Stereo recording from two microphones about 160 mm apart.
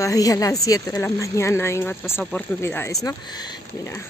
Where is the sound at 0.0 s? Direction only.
20° left (ahead or behind).